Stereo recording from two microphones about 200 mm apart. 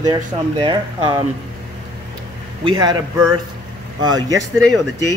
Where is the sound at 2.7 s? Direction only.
20° right (ahead or behind).